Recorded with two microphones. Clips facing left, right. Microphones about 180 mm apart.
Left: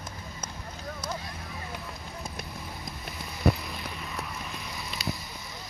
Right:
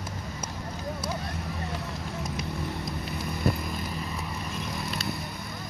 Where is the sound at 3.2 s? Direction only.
Centre (ahead or behind).